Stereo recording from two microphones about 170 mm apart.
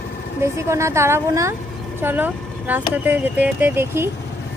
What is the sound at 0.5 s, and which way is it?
Speech, 15° right (ahead or behind).